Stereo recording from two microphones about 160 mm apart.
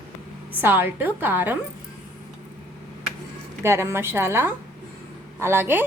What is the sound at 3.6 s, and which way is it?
A woman's voice, 15° right (ahead or behind).